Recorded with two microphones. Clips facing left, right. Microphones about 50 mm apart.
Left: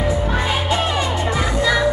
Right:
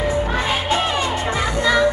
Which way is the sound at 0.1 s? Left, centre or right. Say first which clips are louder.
Even; right.